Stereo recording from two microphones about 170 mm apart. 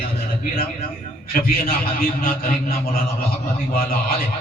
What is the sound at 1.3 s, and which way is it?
A man's voice, 60° left (ahead or behind).